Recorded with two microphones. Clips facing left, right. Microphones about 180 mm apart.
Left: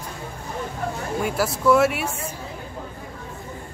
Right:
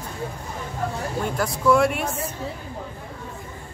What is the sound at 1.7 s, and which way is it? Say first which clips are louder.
Speech: left 1 dB; 5° left (ahead or behind).